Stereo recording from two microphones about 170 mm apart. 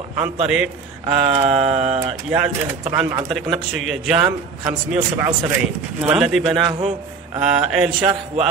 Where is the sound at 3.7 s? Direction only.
5° right (ahead or behind).